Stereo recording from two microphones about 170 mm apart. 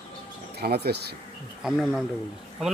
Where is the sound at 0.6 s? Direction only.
70° right (ahead or behind).